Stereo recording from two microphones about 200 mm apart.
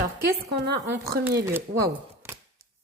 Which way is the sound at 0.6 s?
50° right (ahead or behind).